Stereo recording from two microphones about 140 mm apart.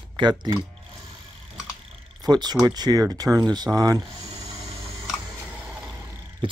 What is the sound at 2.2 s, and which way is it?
Speech, 30° right (ahead or behind).